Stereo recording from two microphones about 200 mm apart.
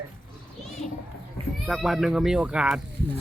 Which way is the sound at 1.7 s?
Centre (ahead or behind).